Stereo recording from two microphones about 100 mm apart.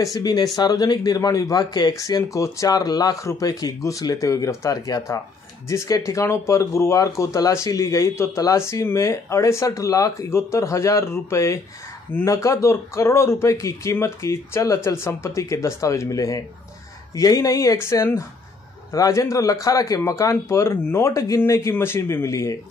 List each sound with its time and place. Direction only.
0.0 s speech: 40° left (ahead or behind)